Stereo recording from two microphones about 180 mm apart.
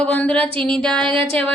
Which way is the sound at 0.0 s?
5° left (ahead or behind).